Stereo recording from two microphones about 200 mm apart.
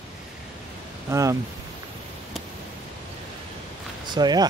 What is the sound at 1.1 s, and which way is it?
Speech, 15° right (ahead or behind).